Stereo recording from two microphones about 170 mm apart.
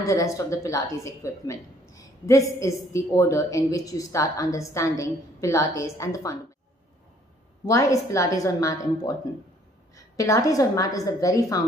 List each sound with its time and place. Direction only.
0.0 s a woman's voice: 20° left (ahead or behind)
7.6 s a woman's voice: 20° left (ahead or behind)